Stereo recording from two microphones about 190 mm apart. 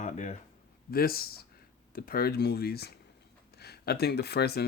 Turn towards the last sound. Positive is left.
turn(degrees=55)  # may be behind; listen again after turning